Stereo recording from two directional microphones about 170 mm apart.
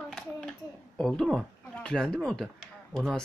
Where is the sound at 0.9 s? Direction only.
Centre (ahead or behind).